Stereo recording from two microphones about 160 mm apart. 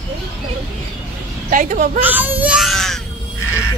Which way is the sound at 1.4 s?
55° right (ahead or behind).